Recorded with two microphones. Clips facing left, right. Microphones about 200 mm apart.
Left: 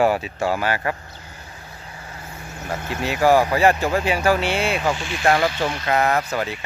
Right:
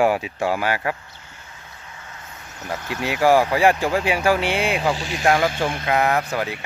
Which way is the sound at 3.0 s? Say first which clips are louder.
Even; 10° right (ahead or behind).